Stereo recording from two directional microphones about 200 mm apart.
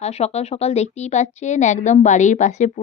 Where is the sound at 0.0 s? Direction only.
30° left (ahead or behind).